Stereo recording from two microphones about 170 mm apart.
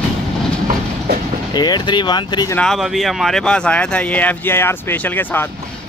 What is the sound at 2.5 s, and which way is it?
Speech, 5° left (ahead or behind).